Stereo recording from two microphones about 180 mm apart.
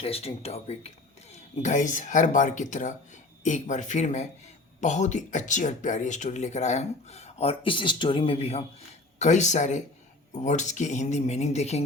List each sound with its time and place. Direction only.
0.0 s speech: 35° left (ahead or behind)